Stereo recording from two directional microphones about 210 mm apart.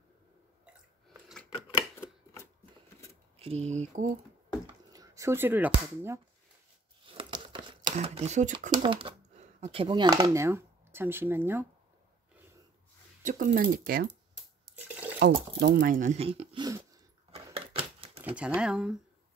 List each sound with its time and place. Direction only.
3.3 s speech: 30° right (ahead or behind)
4.9 s speech: 15° right (ahead or behind)
7.2 s crumpling: 25° right (ahead or behind)
8.8 s speech: 25° right (ahead or behind)
13.2 s speech: 35° right (ahead or behind)
15.1 s speech: 55° right (ahead or behind); by 17.0 s 15° right (ahead or behind)
17.6 s typewriter: 25° right (ahead or behind)
18.2 s speech: 5° right (ahead or behind)